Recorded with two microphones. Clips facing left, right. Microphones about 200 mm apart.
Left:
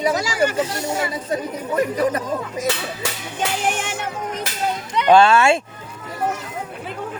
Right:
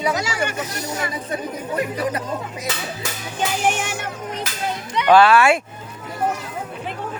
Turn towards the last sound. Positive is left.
turn(degrees=25)  # may be behind; listen again after turning